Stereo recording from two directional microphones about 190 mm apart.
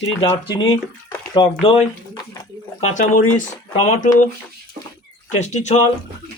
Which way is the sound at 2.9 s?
40° left (ahead or behind).